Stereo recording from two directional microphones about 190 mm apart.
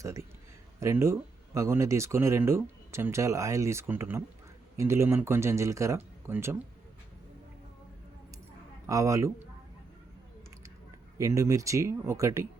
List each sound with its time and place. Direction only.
0.0 s speech: 15° right (ahead or behind)
8.9 s speech: 15° right (ahead or behind)
11.2 s speech: 15° right (ahead or behind)